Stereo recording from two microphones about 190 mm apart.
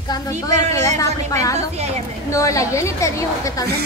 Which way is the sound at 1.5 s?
35° right (ahead or behind).